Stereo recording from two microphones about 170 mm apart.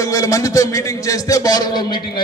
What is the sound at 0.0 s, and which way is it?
Speech, 20° left (ahead or behind).